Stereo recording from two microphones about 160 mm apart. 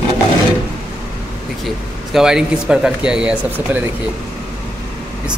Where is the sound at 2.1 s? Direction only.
5° right (ahead or behind).